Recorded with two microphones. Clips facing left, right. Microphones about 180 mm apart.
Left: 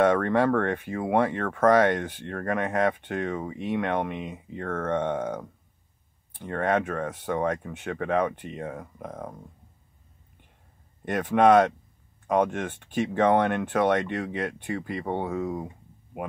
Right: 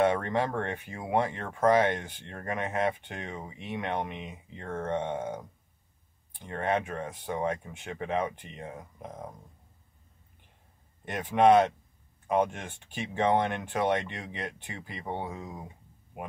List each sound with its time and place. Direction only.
0.0 s speech: 50° left (ahead or behind)
1.0 s speech: 65° left (ahead or behind)
4.2 s speech: 40° left (ahead or behind)
5.2 s speech: 70° left (ahead or behind)
6.4 s speech: 50° left (ahead or behind)
11.1 s speech: 45° left (ahead or behind)
15.2 s speech: 65° left (ahead or behind)